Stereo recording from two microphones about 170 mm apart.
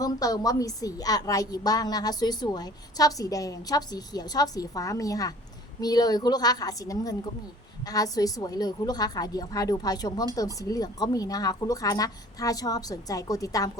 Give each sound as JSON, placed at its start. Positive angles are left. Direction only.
{"t": 0.0, "sound": "a woman's voice", "side_deg": 20}